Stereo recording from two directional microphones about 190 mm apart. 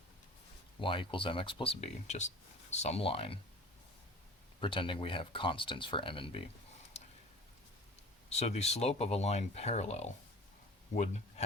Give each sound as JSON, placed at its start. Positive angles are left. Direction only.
{"t": 0.8, "sound": "speech", "side_deg": 25}
{"t": 4.6, "sound": "speech", "side_deg": 25}
{"t": 6.9, "sound": "a sound", "side_deg": 35}
{"t": 8.3, "sound": "speech", "side_deg": 35}